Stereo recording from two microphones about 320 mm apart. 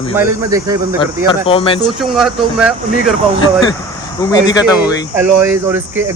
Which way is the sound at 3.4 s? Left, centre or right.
Centre.